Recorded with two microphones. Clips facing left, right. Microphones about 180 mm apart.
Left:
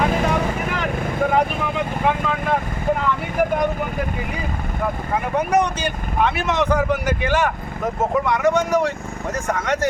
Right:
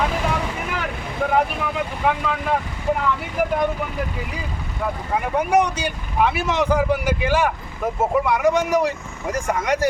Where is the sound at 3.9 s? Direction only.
55° left (ahead or behind).